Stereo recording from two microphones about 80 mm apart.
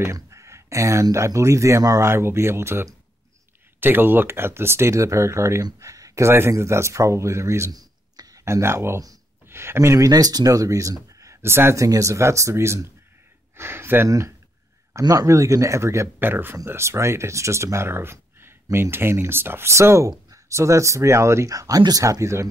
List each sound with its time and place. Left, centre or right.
0.0 s a sound: right
1.1 s speech: right
2.0 s speech: right
7.7 s a sound: right
8.5 s speech: right
14.0 s speech: right
16.2 s speech: right